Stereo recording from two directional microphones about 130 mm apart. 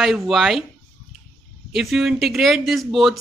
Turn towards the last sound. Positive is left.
turn(degrees=0)  # may be behind; listen again after turning